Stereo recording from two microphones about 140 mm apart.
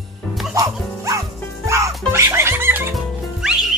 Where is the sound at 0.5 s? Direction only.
25° right (ahead or behind).